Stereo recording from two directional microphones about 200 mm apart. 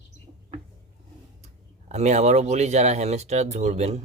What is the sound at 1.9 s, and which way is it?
Speech, 35° right (ahead or behind).